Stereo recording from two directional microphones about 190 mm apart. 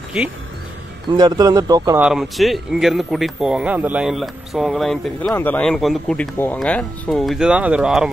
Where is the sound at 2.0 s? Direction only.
5° right (ahead or behind).